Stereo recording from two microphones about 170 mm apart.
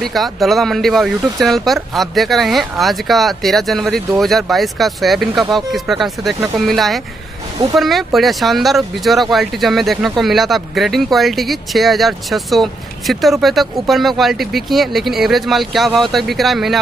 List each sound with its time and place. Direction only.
0.0 s speech: centre (ahead or behind)